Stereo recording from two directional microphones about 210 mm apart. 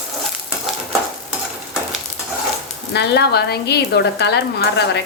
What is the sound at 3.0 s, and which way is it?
Speech, 50° left (ahead or behind).